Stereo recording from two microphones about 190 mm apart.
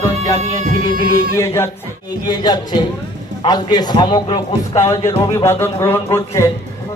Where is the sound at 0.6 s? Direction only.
45° right (ahead or behind).